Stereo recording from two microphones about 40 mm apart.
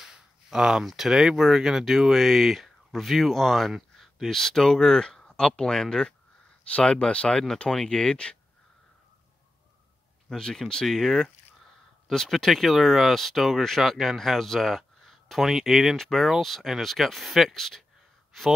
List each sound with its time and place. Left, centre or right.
0.0 s speech: centre; by 8.4 s left
10.3 s speech: centre
10.9 s speech: centre
16.0 s speech: centre